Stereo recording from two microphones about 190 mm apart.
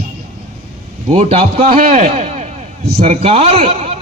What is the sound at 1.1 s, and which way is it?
A man's voice, 35° right (ahead or behind).